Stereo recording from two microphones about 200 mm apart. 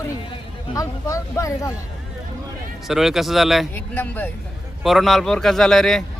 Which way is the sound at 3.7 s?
10° left (ahead or behind).